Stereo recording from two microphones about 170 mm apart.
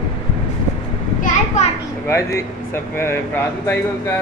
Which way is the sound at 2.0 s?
15° left (ahead or behind).